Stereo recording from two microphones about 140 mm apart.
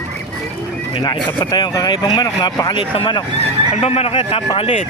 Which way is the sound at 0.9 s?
35° left (ahead or behind).